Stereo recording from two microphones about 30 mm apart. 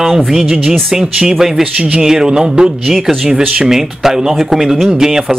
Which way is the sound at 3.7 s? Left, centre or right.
Centre.